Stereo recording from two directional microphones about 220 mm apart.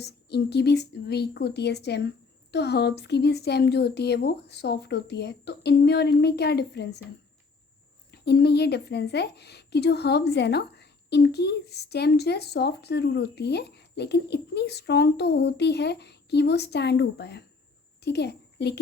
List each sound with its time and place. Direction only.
0.0 s a woman's voice: 50° left (ahead or behind)
8.1 s a woman's voice: 50° left (ahead or behind)